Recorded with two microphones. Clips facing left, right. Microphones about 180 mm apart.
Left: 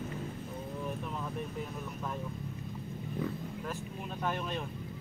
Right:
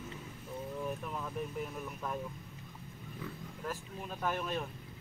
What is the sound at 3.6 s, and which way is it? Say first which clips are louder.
Speech: left 2 dB; 5° right (ahead or behind).